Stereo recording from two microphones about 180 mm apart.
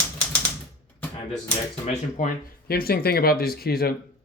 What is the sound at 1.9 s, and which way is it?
Speech, 45° left (ahead or behind).